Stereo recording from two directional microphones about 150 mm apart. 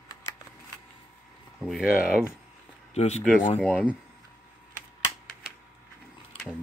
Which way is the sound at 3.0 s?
45° left (ahead or behind).